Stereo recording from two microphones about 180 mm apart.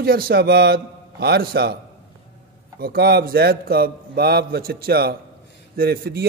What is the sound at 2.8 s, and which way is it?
A man's voice, 60° right (ahead or behind).